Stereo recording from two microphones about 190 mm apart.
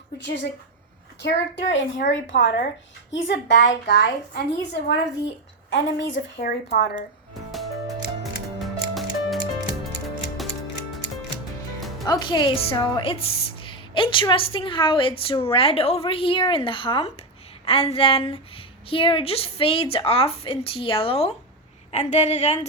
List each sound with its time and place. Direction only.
0.2 s a woman's voice: 65° left (ahead or behind)
6.4 s a woman's voice: 55° left (ahead or behind)
7.5 s music: centre (ahead or behind)
12.0 s a woman's voice: 20° left (ahead or behind)